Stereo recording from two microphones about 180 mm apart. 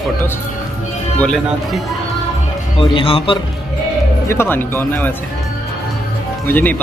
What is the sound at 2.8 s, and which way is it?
Speech, 30° left (ahead or behind).